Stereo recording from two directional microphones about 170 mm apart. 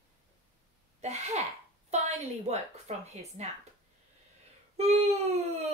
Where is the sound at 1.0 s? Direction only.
40° right (ahead or behind).